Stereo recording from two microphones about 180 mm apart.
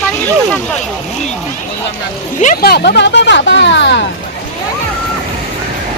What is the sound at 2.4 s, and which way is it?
Speech, 50° left (ahead or behind).